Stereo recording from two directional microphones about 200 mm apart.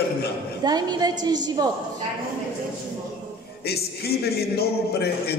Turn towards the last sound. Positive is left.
turn(degrees=50)  # may be behind; listen again after turning